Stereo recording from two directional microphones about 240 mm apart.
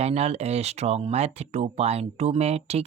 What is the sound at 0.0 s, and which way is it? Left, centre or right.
Speech, right.